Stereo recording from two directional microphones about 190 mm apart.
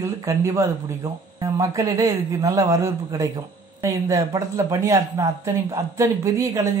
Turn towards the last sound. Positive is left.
turn(degrees=-15)  # may be behind; listen again after turning